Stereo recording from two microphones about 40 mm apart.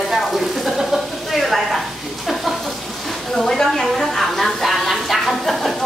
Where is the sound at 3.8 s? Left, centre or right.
Centre.